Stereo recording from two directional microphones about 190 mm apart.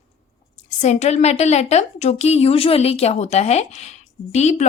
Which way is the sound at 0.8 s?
35° left (ahead or behind).